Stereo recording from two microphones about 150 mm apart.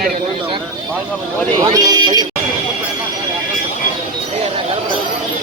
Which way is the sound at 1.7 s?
25° right (ahead or behind).